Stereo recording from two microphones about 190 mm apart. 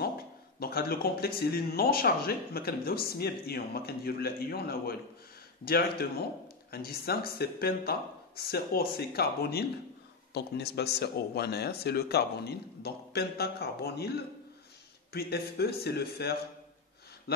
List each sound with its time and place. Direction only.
0.6 s speech: 50° left (ahead or behind)